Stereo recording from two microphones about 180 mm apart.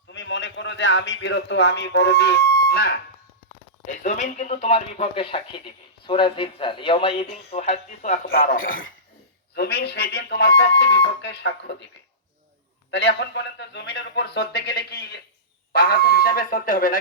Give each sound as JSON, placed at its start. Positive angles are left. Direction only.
{"t": 0.1, "sound": "a man's voice", "side_deg": 90}
{"t": 3.8, "sound": "speech", "side_deg": 45}
{"t": 8.3, "sound": "speech", "side_deg": 55}
{"t": 9.6, "sound": "speech", "side_deg": 65}
{"t": 12.9, "sound": "speech", "side_deg": 65}